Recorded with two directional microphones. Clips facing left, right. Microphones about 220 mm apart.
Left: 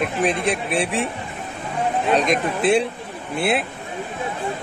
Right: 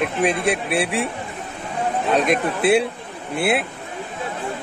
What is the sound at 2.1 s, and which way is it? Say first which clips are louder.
Speech: right 1 dB; 10° right (ahead or behind).